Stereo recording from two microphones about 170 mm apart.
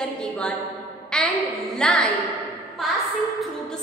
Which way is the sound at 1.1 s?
5° left (ahead or behind).